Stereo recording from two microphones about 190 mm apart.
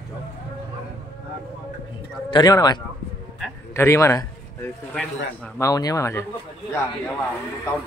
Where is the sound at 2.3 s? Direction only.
20° left (ahead or behind).